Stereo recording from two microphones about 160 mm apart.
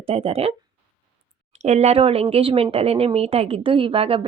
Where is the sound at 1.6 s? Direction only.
45° right (ahead or behind).